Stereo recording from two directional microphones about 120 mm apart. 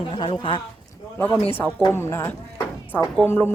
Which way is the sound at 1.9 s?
20° left (ahead or behind).